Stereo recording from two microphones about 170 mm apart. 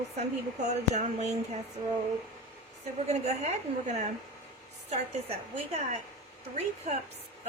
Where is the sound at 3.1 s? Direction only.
40° right (ahead or behind).